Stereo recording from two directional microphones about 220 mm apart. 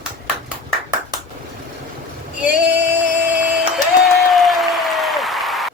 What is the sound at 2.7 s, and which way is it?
Music, 10° right (ahead or behind).